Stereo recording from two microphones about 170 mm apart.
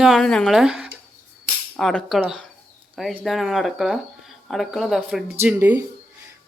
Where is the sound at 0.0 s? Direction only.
Centre (ahead or behind).